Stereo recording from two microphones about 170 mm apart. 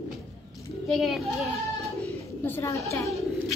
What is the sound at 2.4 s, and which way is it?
Speech, 15° left (ahead or behind).